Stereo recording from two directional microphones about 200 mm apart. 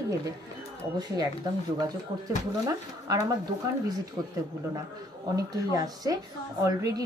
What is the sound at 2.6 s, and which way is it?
Speech, 15° right (ahead or behind).